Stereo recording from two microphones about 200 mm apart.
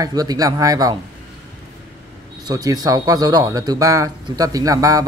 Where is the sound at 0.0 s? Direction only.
20° right (ahead or behind).